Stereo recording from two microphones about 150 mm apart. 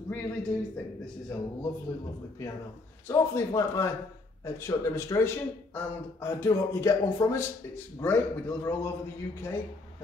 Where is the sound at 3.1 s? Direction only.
20° left (ahead or behind).